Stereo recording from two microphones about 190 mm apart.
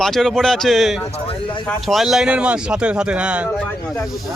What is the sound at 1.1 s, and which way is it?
Speech, 30° left (ahead or behind).